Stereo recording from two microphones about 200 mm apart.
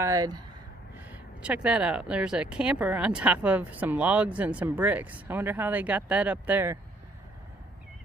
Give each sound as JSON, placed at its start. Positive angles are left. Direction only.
{"t": 0.0, "sound": "speech", "side_deg": -15}
{"t": 0.9, "sound": "speech", "side_deg": -5}